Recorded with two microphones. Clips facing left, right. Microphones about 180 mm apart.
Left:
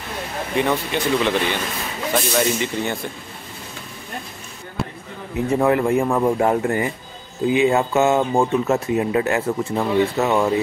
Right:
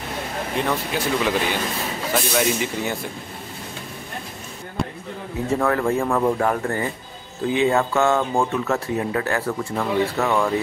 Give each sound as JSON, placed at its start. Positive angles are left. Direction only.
{"t": 0.6, "sound": "speech", "side_deg": 0}
{"t": 4.8, "sound": "basketball bounce", "side_deg": 5}
{"t": 5.5, "sound": "speech", "side_deg": 15}